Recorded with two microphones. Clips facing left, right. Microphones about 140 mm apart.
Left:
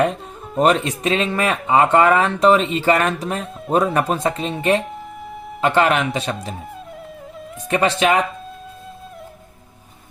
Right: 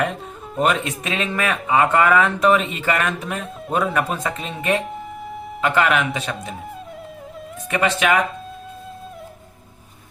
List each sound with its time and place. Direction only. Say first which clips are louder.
0.6 s speech: left 4 dB; 35° left (ahead or behind)
7.7 s speech: left 2 dB; 30° left (ahead or behind)